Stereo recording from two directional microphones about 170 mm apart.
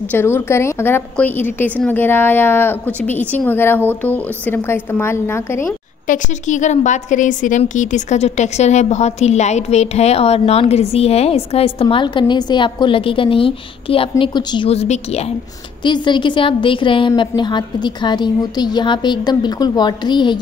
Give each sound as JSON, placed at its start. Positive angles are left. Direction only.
{"t": 0.1, "sound": "a woman's voice", "side_deg": 15}
{"t": 6.0, "sound": "a woman's voice", "side_deg": 45}
{"t": 15.8, "sound": "a woman's voice", "side_deg": 25}